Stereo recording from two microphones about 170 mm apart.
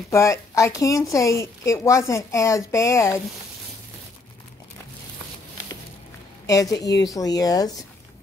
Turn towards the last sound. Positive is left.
turn(degrees=20)  # may be behind; listen again after turning